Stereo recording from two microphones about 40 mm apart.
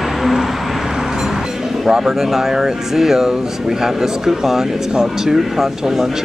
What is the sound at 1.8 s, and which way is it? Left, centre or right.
Speech, centre.